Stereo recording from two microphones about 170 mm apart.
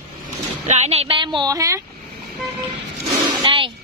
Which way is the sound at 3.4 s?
30° right (ahead or behind).